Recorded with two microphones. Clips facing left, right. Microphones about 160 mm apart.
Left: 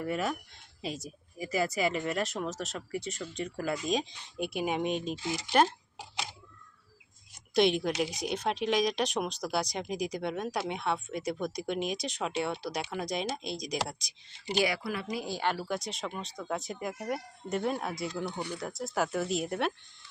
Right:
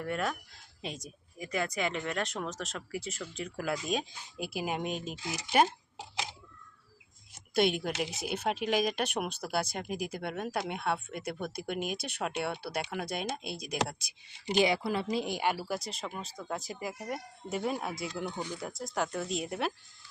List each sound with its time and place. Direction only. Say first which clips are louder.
0.0 s speech: left 2 dB; 5° left (ahead or behind)
7.5 s speech: left 3 dB; 5° right (ahead or behind)
14.3 s speech: right 2 dB; 20° right (ahead or behind); by 19.7 s centre (ahead or behind)